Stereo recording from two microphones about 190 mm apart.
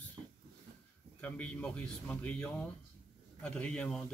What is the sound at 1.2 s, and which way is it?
Speech, 5° left (ahead or behind).